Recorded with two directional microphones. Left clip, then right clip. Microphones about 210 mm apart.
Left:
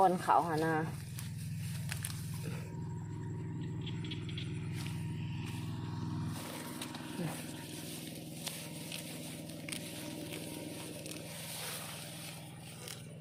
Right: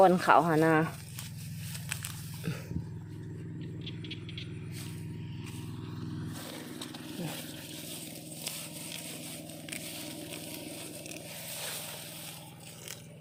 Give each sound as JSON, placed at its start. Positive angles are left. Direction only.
{"t": 0.0, "sound": "speech", "side_deg": -60}